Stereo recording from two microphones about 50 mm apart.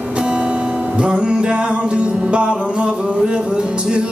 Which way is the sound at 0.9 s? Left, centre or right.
Right.